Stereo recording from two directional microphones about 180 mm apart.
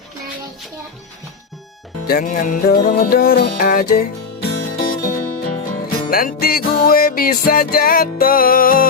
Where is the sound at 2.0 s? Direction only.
55° left (ahead or behind).